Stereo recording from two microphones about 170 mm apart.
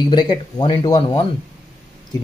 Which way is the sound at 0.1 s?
25° left (ahead or behind).